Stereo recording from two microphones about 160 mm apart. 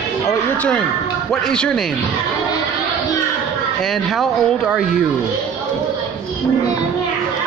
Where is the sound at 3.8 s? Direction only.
Centre (ahead or behind).